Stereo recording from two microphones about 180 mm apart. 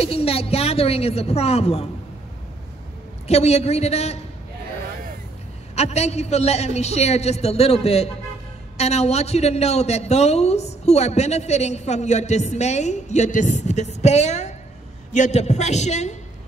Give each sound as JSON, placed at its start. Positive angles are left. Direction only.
{"t": 0.0, "sound": "a man's voice", "side_deg": 35}
{"t": 3.3, "sound": "a man's voice", "side_deg": 35}
{"t": 5.8, "sound": "a man's voice", "side_deg": 35}